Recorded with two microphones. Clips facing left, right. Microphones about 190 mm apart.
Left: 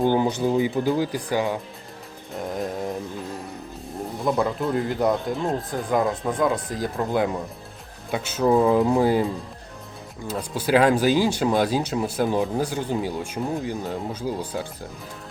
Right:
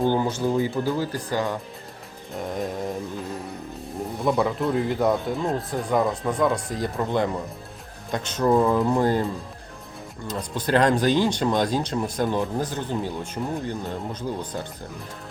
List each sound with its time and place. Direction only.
0.0 s speech: 15° left (ahead or behind)
4.2 s speech: centre (ahead or behind)